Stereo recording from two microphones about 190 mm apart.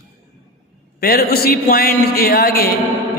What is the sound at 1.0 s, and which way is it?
A man's voice, 55° left (ahead or behind).